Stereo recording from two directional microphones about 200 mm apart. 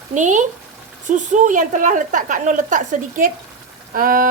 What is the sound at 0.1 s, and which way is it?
A woman's voice, 40° right (ahead or behind).